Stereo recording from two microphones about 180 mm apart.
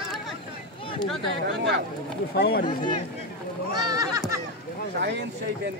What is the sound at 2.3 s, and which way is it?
Speech, 65° left (ahead or behind).